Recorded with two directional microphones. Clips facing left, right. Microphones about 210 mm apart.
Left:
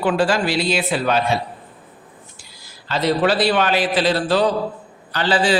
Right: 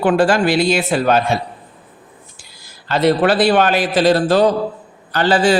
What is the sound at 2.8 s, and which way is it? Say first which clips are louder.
A man's voice: right 4 dB; 55° right (ahead or behind).